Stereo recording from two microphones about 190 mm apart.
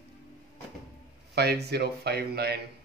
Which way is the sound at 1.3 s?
60° right (ahead or behind).